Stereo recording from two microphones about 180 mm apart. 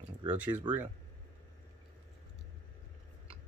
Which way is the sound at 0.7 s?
25° right (ahead or behind).